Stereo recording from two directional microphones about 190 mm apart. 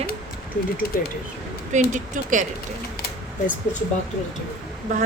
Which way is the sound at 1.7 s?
40° right (ahead or behind).